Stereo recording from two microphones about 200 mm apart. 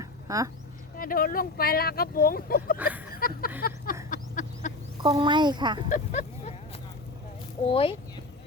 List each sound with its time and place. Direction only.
0.0 s a sound: 15° right (ahead or behind)
0.9 s speech: 45° left (ahead or behind)
2.7 s speech: 10° right (ahead or behind)
3.1 s speech: 45° left (ahead or behind)
4.1 s a sound: 40° left (ahead or behind)
5.0 s speech: 25° right (ahead or behind)
5.9 s vehicle: 35° left (ahead or behind)
7.6 s speech: 30° left (ahead or behind)